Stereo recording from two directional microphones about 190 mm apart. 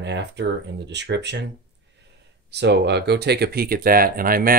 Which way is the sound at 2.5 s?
65° right (ahead or behind).